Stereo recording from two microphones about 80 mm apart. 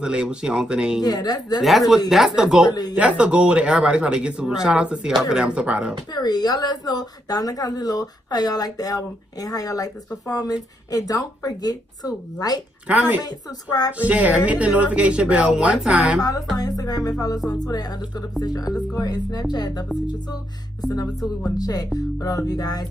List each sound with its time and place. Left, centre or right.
0.0 s speech: centre
1.0 s speech: left
1.6 s speech: centre
2.7 s speech: left
3.0 s speech: centre
6.1 s speech: left
12.8 s speech: centre
16.2 s speech: left
20.9 s speech: left